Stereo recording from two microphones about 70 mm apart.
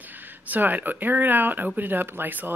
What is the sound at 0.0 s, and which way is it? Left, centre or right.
Speech, right.